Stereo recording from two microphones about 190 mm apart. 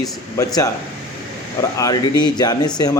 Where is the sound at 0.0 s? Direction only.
20° left (ahead or behind).